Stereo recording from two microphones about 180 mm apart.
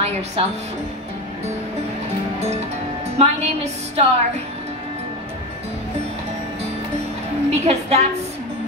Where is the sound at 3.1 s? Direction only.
35° right (ahead or behind).